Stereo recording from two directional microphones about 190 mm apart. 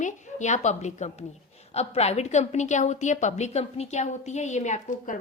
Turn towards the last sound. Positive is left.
turn(degrees=40)  # may be behind; listen again after turning